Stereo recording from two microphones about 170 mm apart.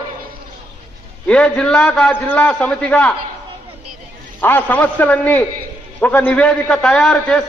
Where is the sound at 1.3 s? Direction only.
5° left (ahead or behind).